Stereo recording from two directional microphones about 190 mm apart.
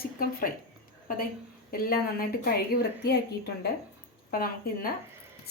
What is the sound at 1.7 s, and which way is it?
A woman's voice, 50° left (ahead or behind).